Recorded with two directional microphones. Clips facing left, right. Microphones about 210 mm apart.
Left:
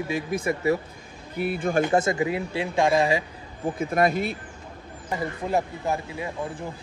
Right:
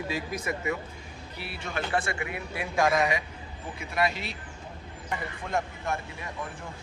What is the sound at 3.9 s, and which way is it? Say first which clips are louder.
Speech: left 6 dB; 50° left (ahead or behind).